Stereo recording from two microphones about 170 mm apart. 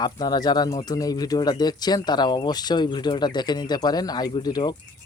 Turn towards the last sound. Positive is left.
turn(degrees=25)  # may be behind; listen again after turning